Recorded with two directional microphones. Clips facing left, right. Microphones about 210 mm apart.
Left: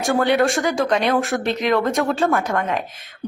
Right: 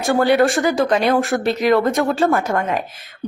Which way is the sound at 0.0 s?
Centre (ahead or behind).